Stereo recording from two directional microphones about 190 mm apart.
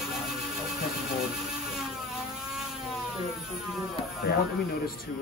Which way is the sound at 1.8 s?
Centre (ahead or behind).